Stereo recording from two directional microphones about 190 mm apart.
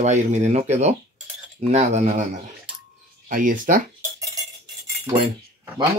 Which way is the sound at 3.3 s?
45° right (ahead or behind).